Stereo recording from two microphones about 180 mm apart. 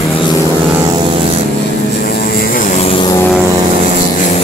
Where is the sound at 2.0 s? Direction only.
60° left (ahead or behind).